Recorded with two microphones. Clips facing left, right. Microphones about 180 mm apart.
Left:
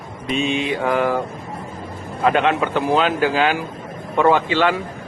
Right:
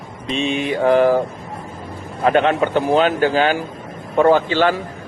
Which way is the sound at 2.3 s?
40° right (ahead or behind).